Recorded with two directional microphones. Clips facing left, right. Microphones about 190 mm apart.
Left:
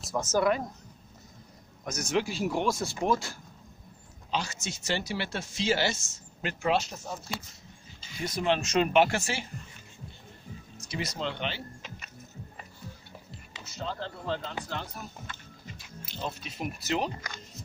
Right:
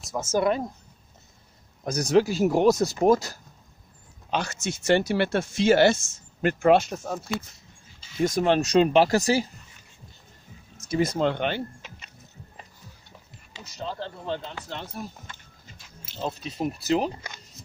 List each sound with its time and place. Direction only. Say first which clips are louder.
0.0 s speech: even; centre (ahead or behind)
1.9 s speech: right 8 dB; 35° right (ahead or behind)
4.3 s speech: right 5 dB; 55° right (ahead or behind)
8.2 s speech: right 7 dB; 45° right (ahead or behind)
10.9 s speech: right 10 dB; 50° right (ahead or behind)
14.7 s speech: right 3 dB; 20° right (ahead or behind)
16.2 s speech: right 6 dB; 35° right (ahead or behind)